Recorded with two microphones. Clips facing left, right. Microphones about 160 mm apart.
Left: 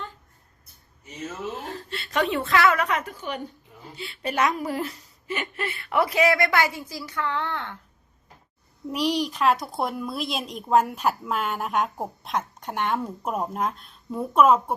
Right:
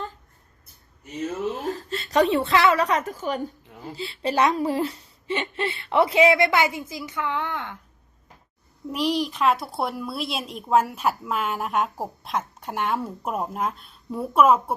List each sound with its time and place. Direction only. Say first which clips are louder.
1.9 s a woman's voice: right 5 dB; 40° right (ahead or behind); by 7.8 s 15° right (ahead or behind)
8.9 s a woman's voice: even; centre (ahead or behind)